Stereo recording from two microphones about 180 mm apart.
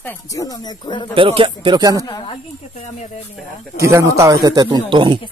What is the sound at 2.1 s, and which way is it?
Speech, 20° left (ahead or behind).